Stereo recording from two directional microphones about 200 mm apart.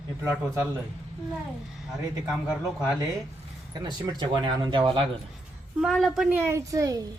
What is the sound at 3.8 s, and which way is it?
Speech, 20° right (ahead or behind).